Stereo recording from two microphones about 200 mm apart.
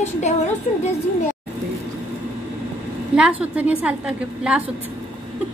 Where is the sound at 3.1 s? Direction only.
5° right (ahead or behind).